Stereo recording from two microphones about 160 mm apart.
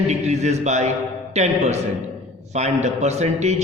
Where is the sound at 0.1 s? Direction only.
45° right (ahead or behind).